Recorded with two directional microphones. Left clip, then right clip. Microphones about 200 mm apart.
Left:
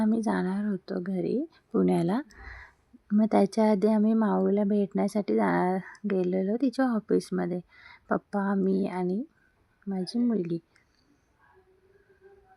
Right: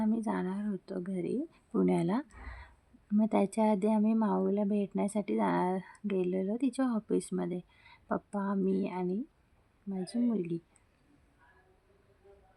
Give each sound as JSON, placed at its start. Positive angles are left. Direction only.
{"t": 0.0, "sound": "speech", "side_deg": 20}